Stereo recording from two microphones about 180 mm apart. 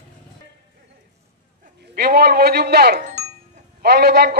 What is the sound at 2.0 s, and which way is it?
Speech, 60° right (ahead or behind).